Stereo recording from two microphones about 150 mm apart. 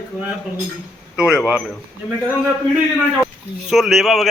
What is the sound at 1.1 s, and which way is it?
A man's voice, 5° right (ahead or behind).